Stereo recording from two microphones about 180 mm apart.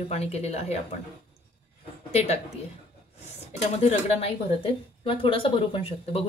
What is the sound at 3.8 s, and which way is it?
A woman's voice, 35° left (ahead or behind).